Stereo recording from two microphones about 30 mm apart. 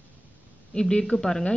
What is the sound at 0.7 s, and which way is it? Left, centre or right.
Speech, left.